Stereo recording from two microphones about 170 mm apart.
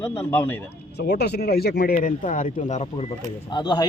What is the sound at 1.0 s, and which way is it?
Speech, 70° left (ahead or behind).